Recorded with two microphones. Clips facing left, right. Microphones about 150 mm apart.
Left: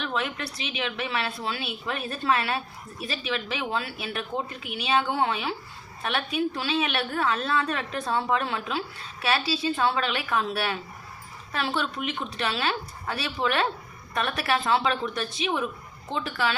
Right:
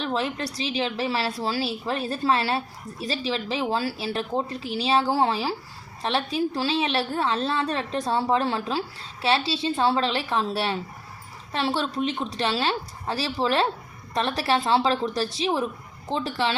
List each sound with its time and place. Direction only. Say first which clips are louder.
0.0 s a woman's voice: right 3 dB; 30° right (ahead or behind)